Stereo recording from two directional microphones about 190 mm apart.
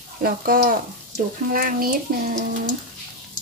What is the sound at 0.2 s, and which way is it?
Speech, 50° right (ahead or behind).